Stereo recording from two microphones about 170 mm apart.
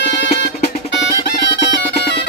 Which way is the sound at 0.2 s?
75° left (ahead or behind).